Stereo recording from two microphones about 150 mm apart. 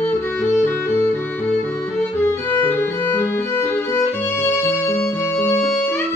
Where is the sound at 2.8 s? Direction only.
15° left (ahead or behind).